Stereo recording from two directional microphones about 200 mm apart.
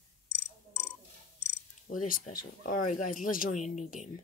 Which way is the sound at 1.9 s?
40° left (ahead or behind).